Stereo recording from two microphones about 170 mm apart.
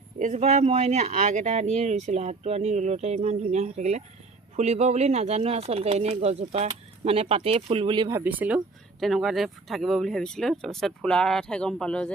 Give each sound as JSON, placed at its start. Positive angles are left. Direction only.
{"t": 0.2, "sound": "speech", "side_deg": -45}
{"t": 8.2, "sound": "speech", "side_deg": -10}